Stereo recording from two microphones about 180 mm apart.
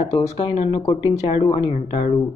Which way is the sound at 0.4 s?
30° left (ahead or behind).